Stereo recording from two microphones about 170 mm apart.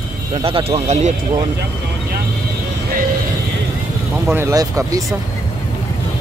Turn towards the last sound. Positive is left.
turn(degrees=-20)  # may be behind; listen again after turning